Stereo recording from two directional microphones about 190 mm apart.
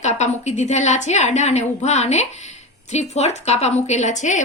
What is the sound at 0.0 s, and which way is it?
A woman's voice, 35° left (ahead or behind).